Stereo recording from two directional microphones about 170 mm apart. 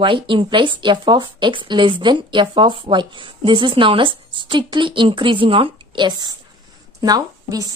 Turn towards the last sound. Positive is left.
turn(degrees=-20)  # may be behind; listen again after turning